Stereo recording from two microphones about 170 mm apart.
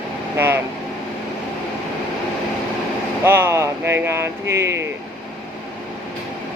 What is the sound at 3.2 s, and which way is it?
Speech, 15° right (ahead or behind).